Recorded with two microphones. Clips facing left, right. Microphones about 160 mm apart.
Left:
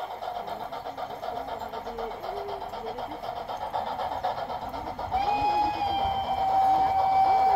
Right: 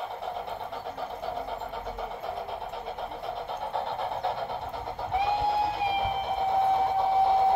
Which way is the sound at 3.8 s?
Centre (ahead or behind).